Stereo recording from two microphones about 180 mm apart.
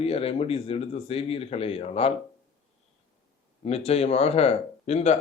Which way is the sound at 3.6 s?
35° left (ahead or behind).